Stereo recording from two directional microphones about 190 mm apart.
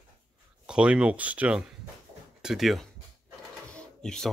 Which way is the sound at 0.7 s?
5° right (ahead or behind).